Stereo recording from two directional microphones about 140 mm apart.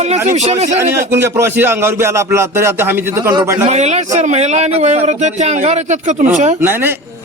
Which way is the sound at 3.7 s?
55° right (ahead or behind).